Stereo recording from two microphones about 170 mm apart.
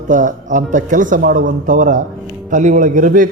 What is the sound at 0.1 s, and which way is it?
Speech, 50° right (ahead or behind).